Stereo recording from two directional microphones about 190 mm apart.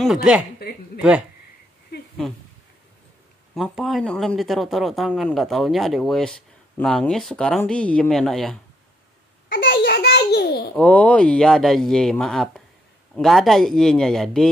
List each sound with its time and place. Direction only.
0.0 s speech: centre (ahead or behind)
3.5 s speech: centre (ahead or behind)
9.5 s a sound: 50° left (ahead or behind)
10.8 s speech: 5° left (ahead or behind)